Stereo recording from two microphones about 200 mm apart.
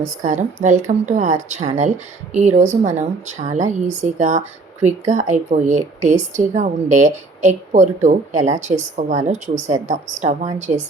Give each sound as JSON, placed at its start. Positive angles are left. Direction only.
{"t": 0.0, "sound": "a woman's voice", "side_deg": -40}